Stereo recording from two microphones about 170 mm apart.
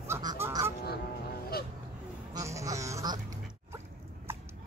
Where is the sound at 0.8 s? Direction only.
65° left (ahead or behind).